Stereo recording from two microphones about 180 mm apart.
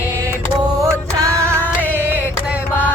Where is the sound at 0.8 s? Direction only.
15° right (ahead or behind).